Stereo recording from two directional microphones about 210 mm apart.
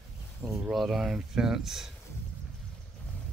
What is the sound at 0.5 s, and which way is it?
Speech, centre (ahead or behind).